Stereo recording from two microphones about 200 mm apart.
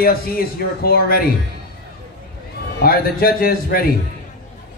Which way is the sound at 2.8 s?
50° left (ahead or behind).